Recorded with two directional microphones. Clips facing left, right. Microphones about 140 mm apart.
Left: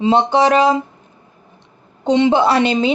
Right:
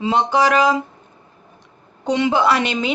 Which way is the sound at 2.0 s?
25° left (ahead or behind).